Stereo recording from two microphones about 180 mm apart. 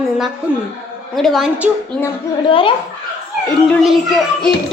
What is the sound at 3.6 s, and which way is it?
Speech, centre (ahead or behind).